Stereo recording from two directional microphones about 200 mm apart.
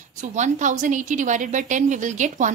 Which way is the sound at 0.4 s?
40° right (ahead or behind).